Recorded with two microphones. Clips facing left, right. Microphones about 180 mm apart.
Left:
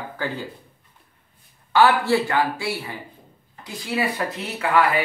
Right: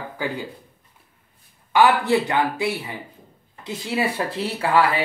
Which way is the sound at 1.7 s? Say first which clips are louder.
Even; 20° right (ahead or behind).